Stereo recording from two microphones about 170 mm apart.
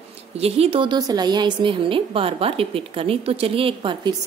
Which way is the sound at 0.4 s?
35° right (ahead or behind).